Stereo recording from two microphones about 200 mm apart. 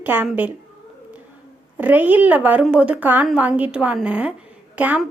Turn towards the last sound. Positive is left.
turn(degrees=-5)  # may be behind; listen again after turning